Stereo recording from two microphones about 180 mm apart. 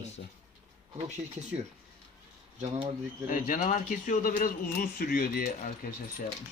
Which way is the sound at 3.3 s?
50° left (ahead or behind).